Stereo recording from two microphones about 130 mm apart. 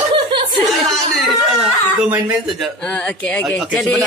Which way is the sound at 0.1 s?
35° right (ahead or behind).